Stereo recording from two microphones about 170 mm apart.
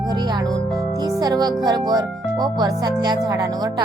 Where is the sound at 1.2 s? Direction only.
25° right (ahead or behind).